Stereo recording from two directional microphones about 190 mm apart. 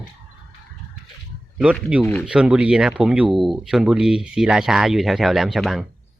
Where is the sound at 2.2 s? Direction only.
5° right (ahead or behind).